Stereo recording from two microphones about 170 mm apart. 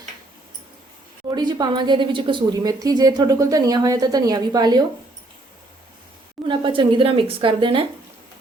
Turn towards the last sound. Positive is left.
turn(degrees=-30)  # may be behind; listen again after turning